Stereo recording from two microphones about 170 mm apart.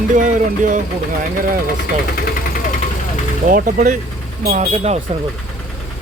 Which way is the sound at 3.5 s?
55° right (ahead or behind).